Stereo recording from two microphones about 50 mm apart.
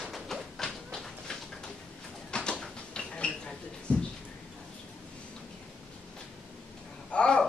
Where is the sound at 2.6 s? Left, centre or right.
Centre.